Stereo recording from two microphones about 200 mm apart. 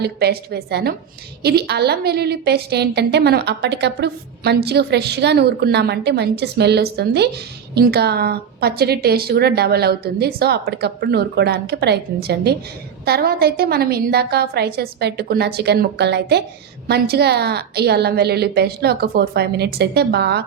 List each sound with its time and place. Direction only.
0.0 s a woman's voice: 55° right (ahead or behind)